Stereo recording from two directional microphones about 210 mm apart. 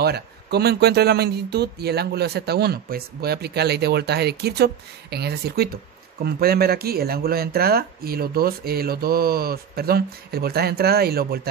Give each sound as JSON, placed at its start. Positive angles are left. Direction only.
{"t": 0.0, "sound": "speech", "side_deg": -50}